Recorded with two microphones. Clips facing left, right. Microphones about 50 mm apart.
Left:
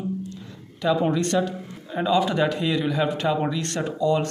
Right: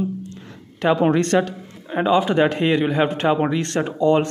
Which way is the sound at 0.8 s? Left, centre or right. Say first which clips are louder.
Right 4 dB; right.